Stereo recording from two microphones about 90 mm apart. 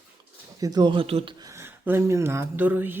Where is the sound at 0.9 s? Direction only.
90° right.